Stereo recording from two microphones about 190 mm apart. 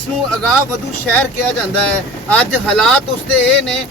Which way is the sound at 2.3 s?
5° left (ahead or behind).